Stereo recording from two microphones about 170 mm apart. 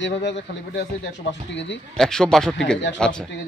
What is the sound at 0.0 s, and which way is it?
Speech, 90° left.